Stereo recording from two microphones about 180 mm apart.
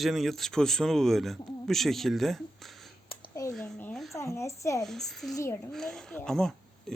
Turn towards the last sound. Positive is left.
turn(degrees=0)  # may be behind; listen again after turning